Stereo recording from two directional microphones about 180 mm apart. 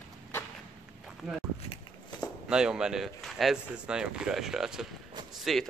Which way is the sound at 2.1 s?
25° left (ahead or behind).